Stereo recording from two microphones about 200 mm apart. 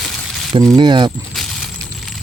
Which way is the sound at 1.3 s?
Centre (ahead or behind).